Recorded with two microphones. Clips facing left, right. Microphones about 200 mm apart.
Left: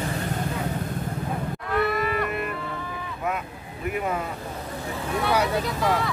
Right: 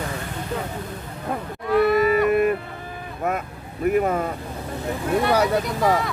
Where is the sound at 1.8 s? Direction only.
Centre (ahead or behind).